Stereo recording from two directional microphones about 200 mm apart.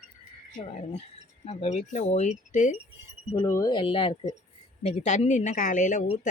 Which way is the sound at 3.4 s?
15° left (ahead or behind).